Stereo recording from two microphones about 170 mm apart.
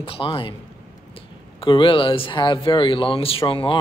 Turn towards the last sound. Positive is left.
turn(degrees=30)  # may be behind; listen again after turning